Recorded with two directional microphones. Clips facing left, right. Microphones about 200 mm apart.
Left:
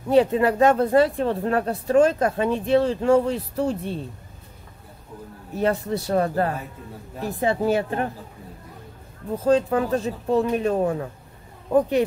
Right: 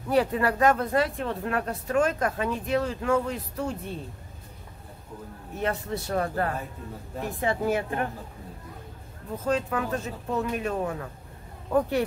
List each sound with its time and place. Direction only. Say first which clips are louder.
0.1 s speech: left 6 dB; 25° left (ahead or behind)
5.6 s speech: left 6 dB; 35° left (ahead or behind)
9.4 s speech: left 8 dB; 30° left (ahead or behind)